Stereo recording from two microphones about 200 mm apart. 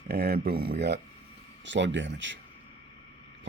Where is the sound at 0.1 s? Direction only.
50° right (ahead or behind).